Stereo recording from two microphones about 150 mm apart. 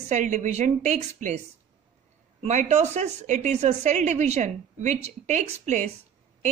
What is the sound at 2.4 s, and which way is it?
A woman's voice, 50° right (ahead or behind).